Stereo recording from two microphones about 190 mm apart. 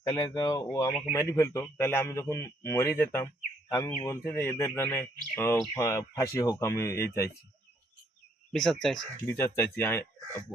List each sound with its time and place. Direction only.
0.1 s a man's voice: 15° left (ahead or behind)
8.5 s a man's voice: centre (ahead or behind)